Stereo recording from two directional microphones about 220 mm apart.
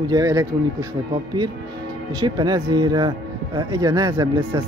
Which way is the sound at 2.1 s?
20° right (ahead or behind).